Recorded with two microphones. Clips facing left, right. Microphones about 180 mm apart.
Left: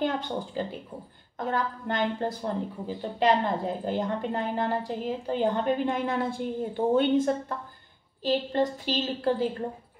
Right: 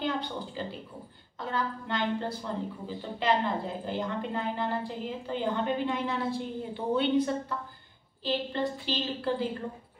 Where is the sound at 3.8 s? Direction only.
45° left (ahead or behind).